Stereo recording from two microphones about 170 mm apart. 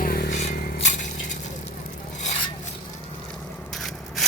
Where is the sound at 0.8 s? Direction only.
45° left (ahead or behind).